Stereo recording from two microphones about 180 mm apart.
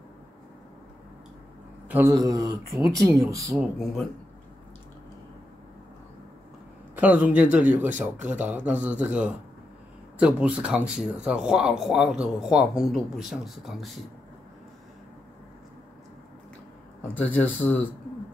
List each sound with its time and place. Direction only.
1.9 s speech: 15° right (ahead or behind)
3.5 s speech: centre (ahead or behind)
7.0 s speech: 10° right (ahead or behind)
17.1 s speech: 10° left (ahead or behind)